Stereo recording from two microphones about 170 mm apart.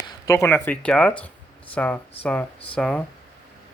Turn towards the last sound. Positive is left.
turn(degrees=5)  # may be behind; listen again after turning